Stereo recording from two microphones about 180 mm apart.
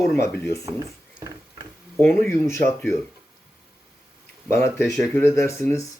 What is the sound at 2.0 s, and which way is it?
Speech, 15° left (ahead or behind).